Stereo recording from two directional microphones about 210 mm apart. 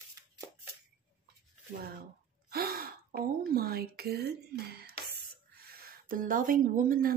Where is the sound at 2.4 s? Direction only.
45° right (ahead or behind).